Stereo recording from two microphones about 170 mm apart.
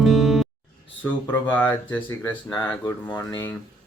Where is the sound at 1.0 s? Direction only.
10° left (ahead or behind).